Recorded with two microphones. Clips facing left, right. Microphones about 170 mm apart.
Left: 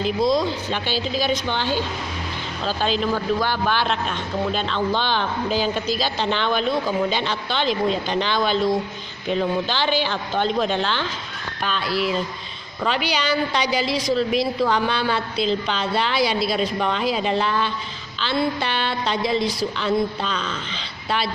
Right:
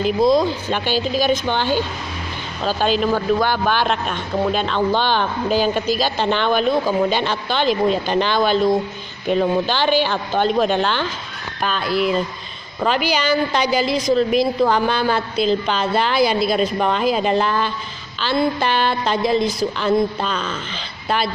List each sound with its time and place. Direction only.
0.0 s speech: 50° right (ahead or behind)
3.0 s speech: 55° right (ahead or behind)